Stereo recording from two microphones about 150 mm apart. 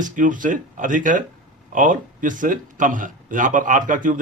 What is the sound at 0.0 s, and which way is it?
A man's voice, 60° right (ahead or behind).